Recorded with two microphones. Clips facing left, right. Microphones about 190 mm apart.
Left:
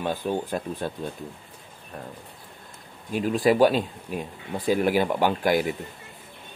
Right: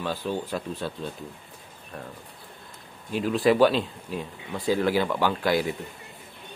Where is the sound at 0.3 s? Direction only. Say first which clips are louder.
Left 2 dB; 50° left (ahead or behind).